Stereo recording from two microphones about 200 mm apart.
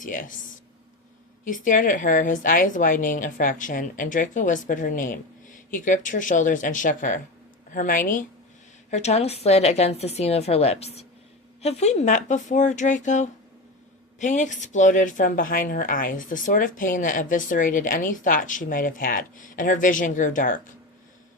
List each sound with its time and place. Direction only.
0.0 s speech: 40° left (ahead or behind)